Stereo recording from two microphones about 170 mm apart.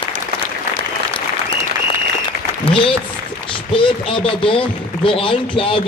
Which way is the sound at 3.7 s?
30° left (ahead or behind).